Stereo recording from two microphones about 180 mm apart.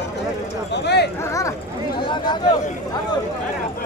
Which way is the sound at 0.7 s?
70° left (ahead or behind).